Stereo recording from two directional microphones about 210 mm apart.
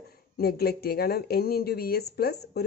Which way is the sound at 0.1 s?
50° left (ahead or behind).